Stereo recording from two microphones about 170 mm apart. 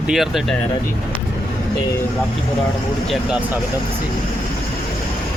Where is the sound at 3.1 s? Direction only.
5° right (ahead or behind).